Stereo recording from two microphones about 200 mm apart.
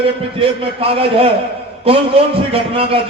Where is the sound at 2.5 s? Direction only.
30° right (ahead or behind).